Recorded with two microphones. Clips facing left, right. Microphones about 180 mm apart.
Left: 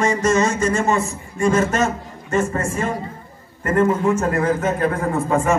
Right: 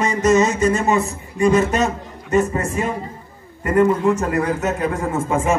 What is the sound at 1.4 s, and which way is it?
A man's voice, 20° right (ahead or behind).